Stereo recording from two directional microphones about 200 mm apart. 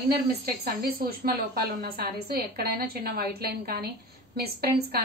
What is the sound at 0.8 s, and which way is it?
A woman's voice, 50° right (ahead or behind).